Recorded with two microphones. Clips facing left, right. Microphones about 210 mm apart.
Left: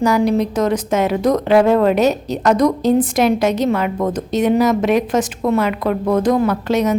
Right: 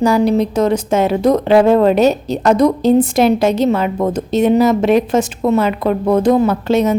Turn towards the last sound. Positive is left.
turn(degrees=-30)  # may be behind; listen again after turning